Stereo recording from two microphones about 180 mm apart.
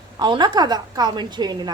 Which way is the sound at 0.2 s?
25° right (ahead or behind).